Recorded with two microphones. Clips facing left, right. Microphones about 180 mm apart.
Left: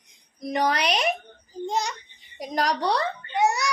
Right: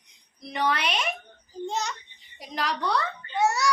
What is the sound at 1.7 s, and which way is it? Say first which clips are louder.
Speech: left 3 dB; 15° left (ahead or behind).